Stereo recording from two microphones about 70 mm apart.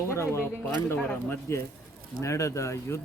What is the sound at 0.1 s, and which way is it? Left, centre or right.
Speech, left.